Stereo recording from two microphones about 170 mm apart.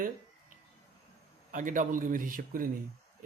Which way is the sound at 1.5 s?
50° right (ahead or behind).